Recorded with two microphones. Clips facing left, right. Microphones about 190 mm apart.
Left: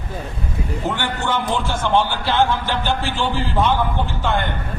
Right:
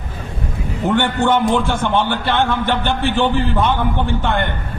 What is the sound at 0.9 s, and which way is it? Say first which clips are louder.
A man's voice: right 7 dB; 60° right (ahead or behind).